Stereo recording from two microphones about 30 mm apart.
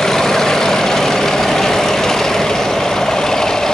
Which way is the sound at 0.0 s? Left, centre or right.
Centre.